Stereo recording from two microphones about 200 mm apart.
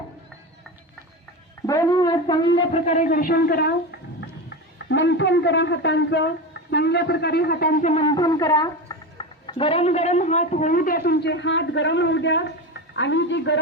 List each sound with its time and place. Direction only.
1.6 s speech: 15° left (ahead or behind)
2.8 s a woman's voice: 35° left (ahead or behind)
4.4 s speech: 60° left (ahead or behind); by 8.0 s 40° left (ahead or behind)
8.0 s a woman's voice: 20° left (ahead or behind); by 13.6 s 65° left (ahead or behind)